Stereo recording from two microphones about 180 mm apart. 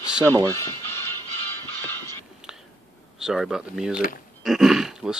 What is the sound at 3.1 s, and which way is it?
Speech, 5° right (ahead or behind).